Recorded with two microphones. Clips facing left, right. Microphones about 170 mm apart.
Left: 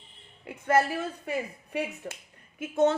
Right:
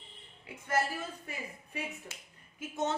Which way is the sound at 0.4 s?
65° left (ahead or behind).